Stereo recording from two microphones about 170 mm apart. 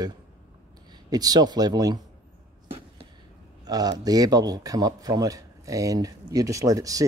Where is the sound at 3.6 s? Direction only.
25° right (ahead or behind).